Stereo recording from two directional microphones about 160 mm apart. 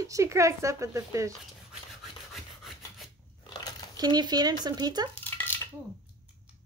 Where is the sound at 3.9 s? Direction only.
25° right (ahead or behind).